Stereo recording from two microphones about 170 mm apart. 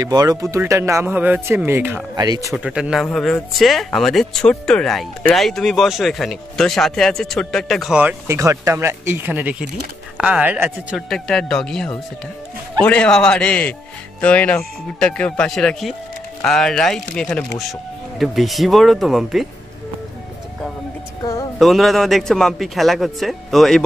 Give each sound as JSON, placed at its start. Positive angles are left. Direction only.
{"t": 0.0, "sound": "speech", "side_deg": -20}
{"t": 2.1, "sound": "speech", "side_deg": -20}
{"t": 2.5, "sound": "speech", "side_deg": -5}
{"t": 21.5, "sound": "speech", "side_deg": 0}